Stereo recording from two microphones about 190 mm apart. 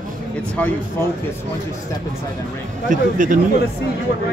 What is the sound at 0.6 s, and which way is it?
Speech, 10° left (ahead or behind).